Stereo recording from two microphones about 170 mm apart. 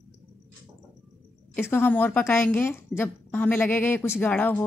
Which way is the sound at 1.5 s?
10° left (ahead or behind).